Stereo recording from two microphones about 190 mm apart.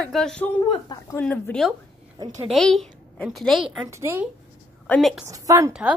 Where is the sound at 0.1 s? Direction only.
5° left (ahead or behind).